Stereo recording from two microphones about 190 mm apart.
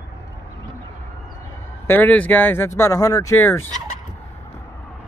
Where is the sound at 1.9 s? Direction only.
10° left (ahead or behind).